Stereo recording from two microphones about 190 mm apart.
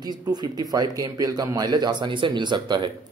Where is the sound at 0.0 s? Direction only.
20° right (ahead or behind).